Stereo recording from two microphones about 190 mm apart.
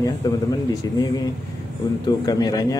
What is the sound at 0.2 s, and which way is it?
A man's voice, 20° left (ahead or behind).